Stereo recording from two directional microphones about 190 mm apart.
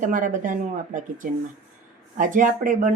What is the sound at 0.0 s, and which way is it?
Speech, 45° right (ahead or behind).